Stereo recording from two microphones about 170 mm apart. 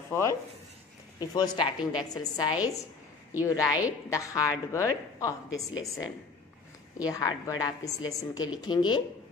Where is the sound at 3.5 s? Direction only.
20° left (ahead or behind).